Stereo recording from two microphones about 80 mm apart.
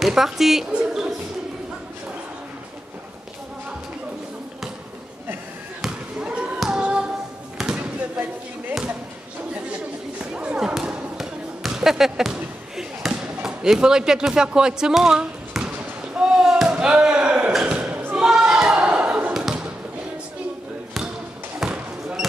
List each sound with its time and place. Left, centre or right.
0.0 s a woman's voice: centre
6.2 s a sound: centre
6.6 s tap: centre
7.5 s basketball bounce: centre
10.3 s a sound: centre
10.7 s basketball bounce: centre
16.2 s slam: centre
17.7 s basketball bounce: right
18.2 s a sound: centre
19.3 s basketball bounce: centre
21.5 s basketball bounce: centre